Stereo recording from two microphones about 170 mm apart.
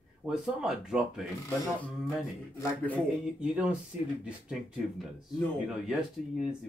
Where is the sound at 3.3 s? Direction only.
5° right (ahead or behind).